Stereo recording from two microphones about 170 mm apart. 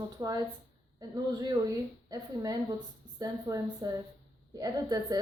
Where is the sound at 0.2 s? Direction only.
20° right (ahead or behind).